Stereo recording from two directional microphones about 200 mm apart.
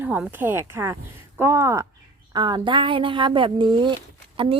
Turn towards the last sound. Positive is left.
turn(degrees=-25)  # may be behind; listen again after turning